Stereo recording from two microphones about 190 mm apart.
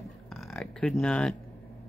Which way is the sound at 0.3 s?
Centre (ahead or behind).